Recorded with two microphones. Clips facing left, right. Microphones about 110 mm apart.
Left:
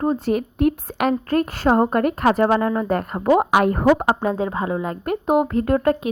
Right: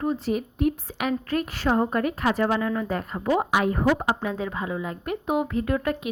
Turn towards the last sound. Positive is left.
turn(degrees=45)  # may be behind; listen again after turning